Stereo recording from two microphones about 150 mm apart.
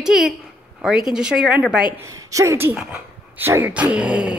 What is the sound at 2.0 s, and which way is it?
Speech, 20° right (ahead or behind).